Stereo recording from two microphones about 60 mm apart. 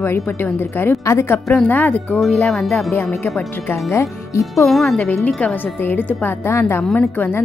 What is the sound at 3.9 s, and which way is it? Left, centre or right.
Speech, left.